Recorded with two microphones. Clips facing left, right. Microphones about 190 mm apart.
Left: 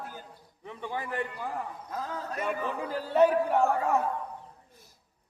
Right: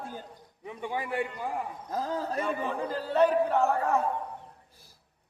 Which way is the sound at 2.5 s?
10° left (ahead or behind).